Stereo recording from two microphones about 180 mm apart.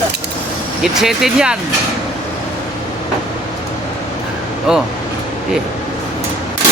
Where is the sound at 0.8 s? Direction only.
Centre (ahead or behind).